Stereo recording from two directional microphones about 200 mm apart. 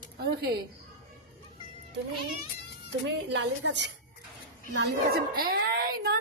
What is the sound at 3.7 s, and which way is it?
Speech, 60° right (ahead or behind).